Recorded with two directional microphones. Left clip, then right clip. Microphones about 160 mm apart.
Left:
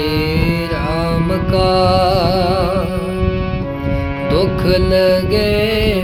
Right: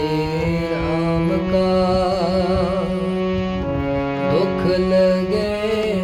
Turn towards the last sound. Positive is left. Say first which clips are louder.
# left 5 dB
turn(degrees=35)  # may be behind; listen again after turning